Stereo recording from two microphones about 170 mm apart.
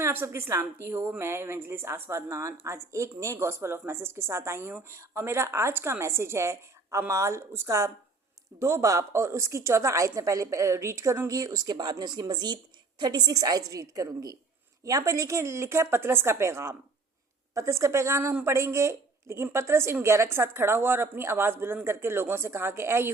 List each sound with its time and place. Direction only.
0.0 s a woman's voice: 15° right (ahead or behind)